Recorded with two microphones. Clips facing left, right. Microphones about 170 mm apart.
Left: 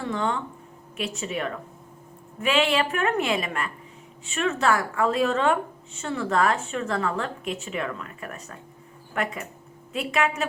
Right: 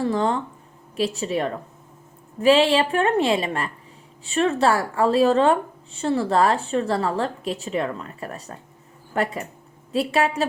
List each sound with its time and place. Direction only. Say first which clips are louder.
0.0 s a woman's voice: right 5 dB; 35° right (ahead or behind)